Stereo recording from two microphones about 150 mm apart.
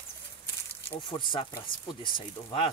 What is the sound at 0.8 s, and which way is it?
Speech, 35° left (ahead or behind).